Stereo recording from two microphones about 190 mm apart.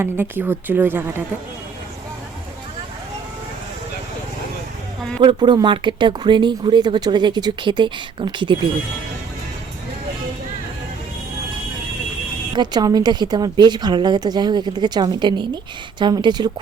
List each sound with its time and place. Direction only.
0.0 s a woman's voice: 10° right (ahead or behind)
5.2 s speech: 25° right (ahead or behind)
12.5 s speech: 20° right (ahead or behind)